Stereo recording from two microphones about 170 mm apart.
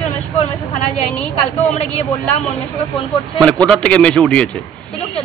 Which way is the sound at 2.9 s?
Centre (ahead or behind).